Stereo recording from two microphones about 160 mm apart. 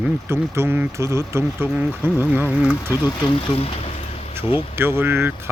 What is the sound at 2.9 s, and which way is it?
Speech, 25° left (ahead or behind).